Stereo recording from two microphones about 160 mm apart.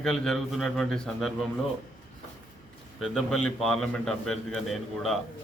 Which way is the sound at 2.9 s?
Centre (ahead or behind).